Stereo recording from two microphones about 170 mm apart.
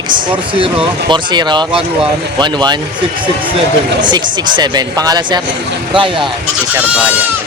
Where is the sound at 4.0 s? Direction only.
25° right (ahead or behind).